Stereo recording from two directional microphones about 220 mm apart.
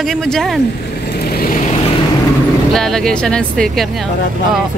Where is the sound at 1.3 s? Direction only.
40° left (ahead or behind).